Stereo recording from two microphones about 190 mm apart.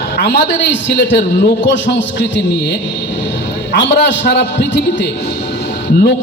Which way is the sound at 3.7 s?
65° left (ahead or behind).